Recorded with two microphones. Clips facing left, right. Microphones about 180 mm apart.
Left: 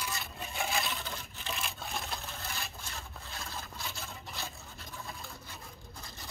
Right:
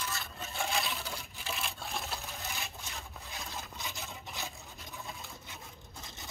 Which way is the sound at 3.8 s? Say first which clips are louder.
Even; 15° right (ahead or behind).